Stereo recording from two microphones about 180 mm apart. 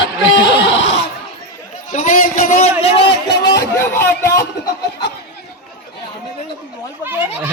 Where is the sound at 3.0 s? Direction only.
70° left (ahead or behind).